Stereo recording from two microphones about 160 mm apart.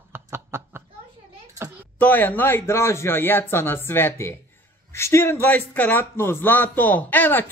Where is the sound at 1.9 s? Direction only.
10° left (ahead or behind).